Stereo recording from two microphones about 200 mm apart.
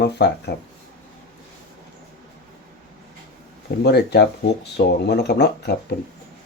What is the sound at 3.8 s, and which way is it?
Speech, 55° left (ahead or behind).